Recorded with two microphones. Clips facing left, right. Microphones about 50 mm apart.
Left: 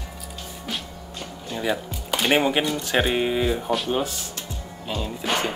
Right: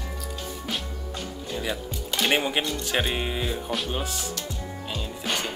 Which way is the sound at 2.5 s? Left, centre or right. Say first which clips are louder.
Left 4 dB; centre.